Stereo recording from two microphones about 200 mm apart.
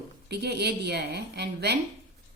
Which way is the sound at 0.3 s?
55° right (ahead or behind).